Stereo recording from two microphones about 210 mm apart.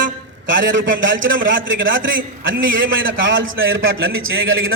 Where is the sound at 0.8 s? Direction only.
60° right (ahead or behind).